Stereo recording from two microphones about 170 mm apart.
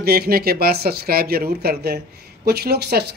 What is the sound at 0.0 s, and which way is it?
Speech, 65° right (ahead or behind).